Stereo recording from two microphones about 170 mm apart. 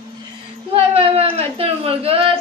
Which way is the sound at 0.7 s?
35° right (ahead or behind).